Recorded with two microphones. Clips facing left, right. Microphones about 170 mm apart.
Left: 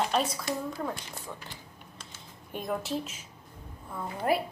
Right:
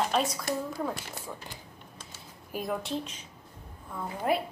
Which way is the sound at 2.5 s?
Centre (ahead or behind).